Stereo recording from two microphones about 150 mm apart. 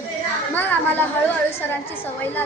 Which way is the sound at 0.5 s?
10° left (ahead or behind).